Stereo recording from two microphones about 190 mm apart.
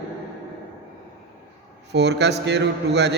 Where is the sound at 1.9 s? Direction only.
65° right (ahead or behind).